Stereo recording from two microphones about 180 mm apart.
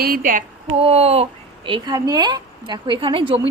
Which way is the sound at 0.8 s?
35° right (ahead or behind).